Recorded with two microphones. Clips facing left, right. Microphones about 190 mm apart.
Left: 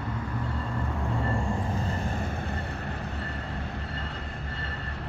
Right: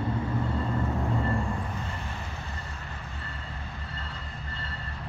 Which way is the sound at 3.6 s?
60° left (ahead or behind).